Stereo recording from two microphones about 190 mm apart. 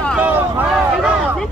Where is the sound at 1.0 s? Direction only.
5° left (ahead or behind).